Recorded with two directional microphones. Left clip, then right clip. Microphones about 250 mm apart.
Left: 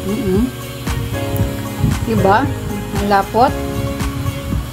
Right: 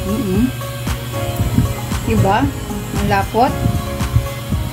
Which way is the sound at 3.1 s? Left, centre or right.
Left.